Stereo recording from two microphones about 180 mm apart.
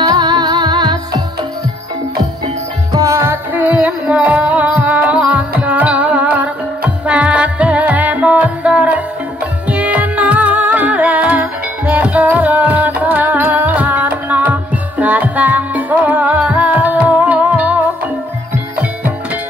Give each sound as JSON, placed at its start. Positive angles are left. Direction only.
{"t": 0.0, "sound": "music", "side_deg": -25}
{"t": 2.9, "sound": "music", "side_deg": -15}